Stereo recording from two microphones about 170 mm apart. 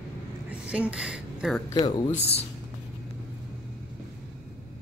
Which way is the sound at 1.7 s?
25° left (ahead or behind).